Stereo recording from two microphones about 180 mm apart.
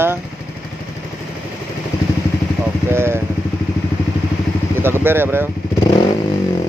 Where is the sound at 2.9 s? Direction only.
15° right (ahead or behind).